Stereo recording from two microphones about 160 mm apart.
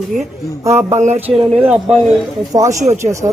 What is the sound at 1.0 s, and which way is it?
Speech, 45° right (ahead or behind).